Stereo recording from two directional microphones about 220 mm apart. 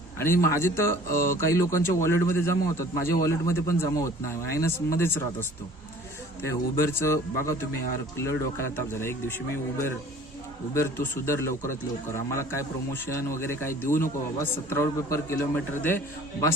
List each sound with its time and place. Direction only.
0.2 s a man's voice: 10° left (ahead or behind)
10.8 s a man's voice: 10° left (ahead or behind)